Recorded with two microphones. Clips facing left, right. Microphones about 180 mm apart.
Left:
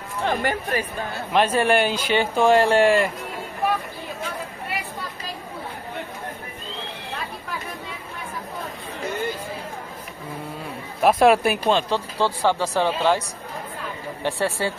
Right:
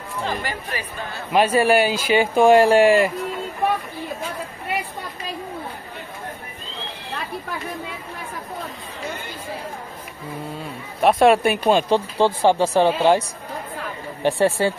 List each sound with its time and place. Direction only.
0.2 s speech: 60° left (ahead or behind)
1.3 s speech: 5° right (ahead or behind)
11.0 s speech: centre (ahead or behind)
11.6 s speech: 15° right (ahead or behind)
14.2 s speech: 15° right (ahead or behind)